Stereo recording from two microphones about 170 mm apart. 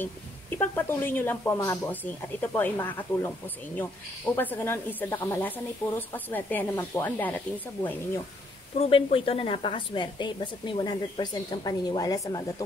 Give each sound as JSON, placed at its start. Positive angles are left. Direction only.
{"t": 0.6, "sound": "speech", "side_deg": 10}
{"t": 4.4, "sound": "speech", "side_deg": 10}
{"t": 8.7, "sound": "a woman's voice", "side_deg": 35}